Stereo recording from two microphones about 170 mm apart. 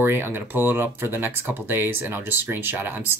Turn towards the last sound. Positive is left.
turn(degrees=-10)  # may be behind; listen again after turning